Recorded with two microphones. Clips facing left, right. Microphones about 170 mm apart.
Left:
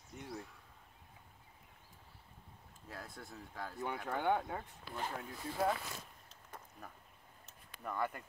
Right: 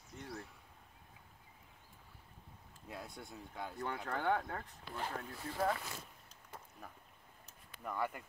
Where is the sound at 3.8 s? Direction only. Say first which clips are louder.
Left 1 dB; 5° left (ahead or behind).